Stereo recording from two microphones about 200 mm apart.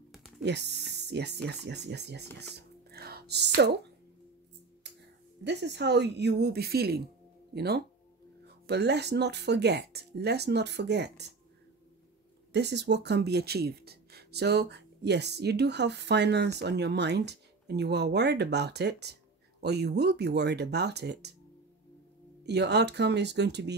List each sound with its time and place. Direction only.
0.4 s speech: 60° right (ahead or behind)
2.5 s a sound: 50° right (ahead or behind)
5.4 s speech: 55° right (ahead or behind)
12.5 s speech: 60° right (ahead or behind)
22.4 s speech: 55° right (ahead or behind)